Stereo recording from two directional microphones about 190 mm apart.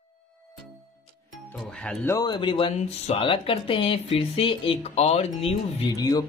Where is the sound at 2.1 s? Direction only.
25° left (ahead or behind).